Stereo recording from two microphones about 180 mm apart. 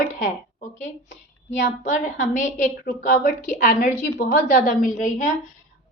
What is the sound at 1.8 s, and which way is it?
A woman's voice, 45° left (ahead or behind).